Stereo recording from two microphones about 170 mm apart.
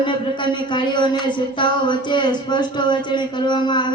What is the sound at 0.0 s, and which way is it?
Speech, 30° left (ahead or behind).